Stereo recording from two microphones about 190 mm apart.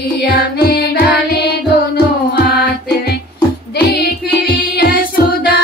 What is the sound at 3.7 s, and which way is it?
Music, 60° left (ahead or behind).